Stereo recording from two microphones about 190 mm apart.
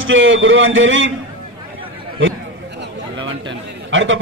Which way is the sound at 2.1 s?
80° right.